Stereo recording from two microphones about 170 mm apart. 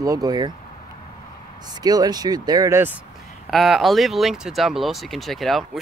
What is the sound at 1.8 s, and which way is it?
Speech, 25° right (ahead or behind).